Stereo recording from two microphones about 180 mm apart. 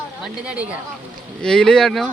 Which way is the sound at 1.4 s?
5° left (ahead or behind).